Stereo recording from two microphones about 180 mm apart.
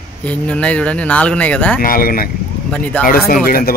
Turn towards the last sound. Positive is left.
turn(degrees=55)  # may be behind; listen again after turning